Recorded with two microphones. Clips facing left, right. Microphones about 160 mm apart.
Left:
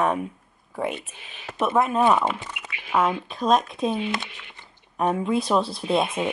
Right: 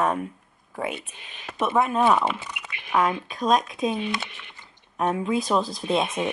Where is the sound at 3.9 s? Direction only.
15° left (ahead or behind).